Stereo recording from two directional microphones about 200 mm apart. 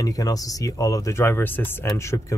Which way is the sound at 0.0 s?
15° left (ahead or behind).